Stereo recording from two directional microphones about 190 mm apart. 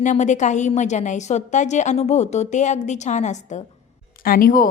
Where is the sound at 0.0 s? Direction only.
40° left (ahead or behind).